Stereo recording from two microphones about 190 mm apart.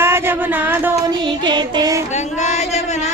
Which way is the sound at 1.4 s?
20° right (ahead or behind).